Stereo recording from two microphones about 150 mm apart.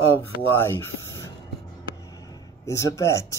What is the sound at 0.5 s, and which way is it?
Speech, 15° left (ahead or behind).